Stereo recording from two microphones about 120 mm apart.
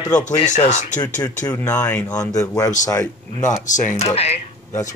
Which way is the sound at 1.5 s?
20° left (ahead or behind).